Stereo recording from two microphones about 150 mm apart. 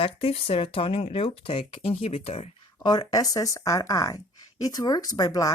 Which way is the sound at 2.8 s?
25° left (ahead or behind).